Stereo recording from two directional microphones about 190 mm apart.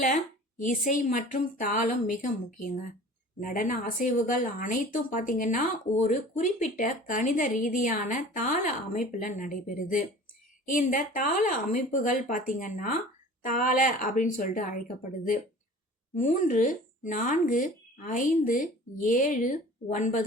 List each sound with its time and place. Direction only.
0.6 s speech: 45° left (ahead or behind)